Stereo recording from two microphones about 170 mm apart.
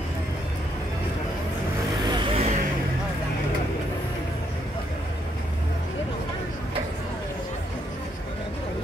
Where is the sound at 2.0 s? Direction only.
30° right (ahead or behind).